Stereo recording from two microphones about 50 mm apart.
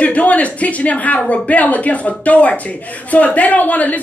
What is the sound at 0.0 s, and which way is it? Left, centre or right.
A woman's voice, left.